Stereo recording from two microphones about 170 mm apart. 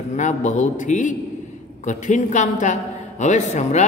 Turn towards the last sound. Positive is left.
turn(degrees=40)  # may be behind; listen again after turning